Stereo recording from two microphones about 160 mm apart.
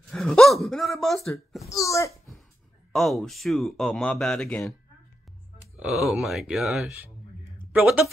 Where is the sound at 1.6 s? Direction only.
20° left (ahead or behind).